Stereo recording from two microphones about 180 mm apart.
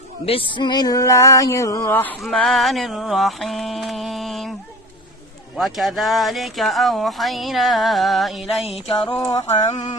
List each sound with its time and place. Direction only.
0.5 s female singing: 25° left (ahead or behind); by 4.5 s centre (ahead or behind)
5.5 s female singing: centre (ahead or behind)
8.6 s music: 35° left (ahead or behind)
9.1 s a sound: 20° left (ahead or behind)